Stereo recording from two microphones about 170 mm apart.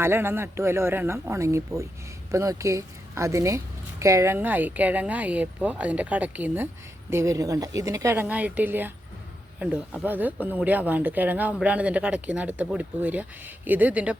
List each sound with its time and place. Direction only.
0.0 s speech: 15° right (ahead or behind)